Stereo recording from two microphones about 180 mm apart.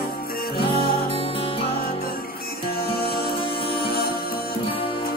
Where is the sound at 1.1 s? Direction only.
35° left (ahead or behind).